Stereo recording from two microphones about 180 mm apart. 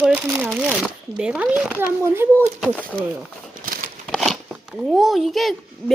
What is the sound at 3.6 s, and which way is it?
Crumpling, 50° right (ahead or behind).